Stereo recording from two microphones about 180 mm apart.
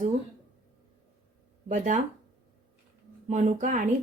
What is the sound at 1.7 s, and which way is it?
Speech, 40° right (ahead or behind).